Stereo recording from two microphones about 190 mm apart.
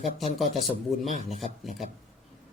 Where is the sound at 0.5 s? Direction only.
35° left (ahead or behind).